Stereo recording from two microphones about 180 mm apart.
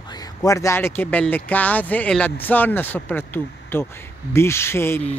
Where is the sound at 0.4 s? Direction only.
15° left (ahead or behind).